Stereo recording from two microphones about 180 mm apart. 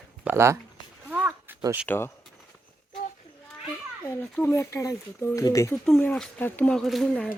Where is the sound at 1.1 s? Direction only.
10° right (ahead or behind).